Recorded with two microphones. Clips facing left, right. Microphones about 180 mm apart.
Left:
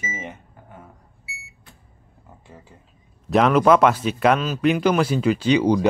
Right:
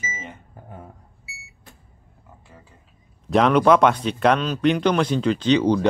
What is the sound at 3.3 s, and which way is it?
Speech, centre (ahead or behind).